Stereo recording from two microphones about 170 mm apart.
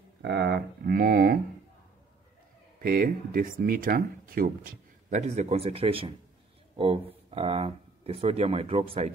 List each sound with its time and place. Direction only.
0.2 s speech: 75° right (ahead or behind)
2.8 s speech: 60° right (ahead or behind); by 6.1 s 30° right (ahead or behind)
7.2 s speech: 35° right (ahead or behind)